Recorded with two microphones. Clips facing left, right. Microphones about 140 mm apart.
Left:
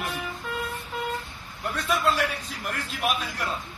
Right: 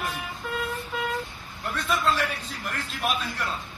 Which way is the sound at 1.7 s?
10° left (ahead or behind).